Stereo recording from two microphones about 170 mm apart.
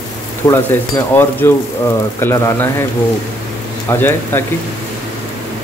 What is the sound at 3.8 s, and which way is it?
Speech, 15° left (ahead or behind).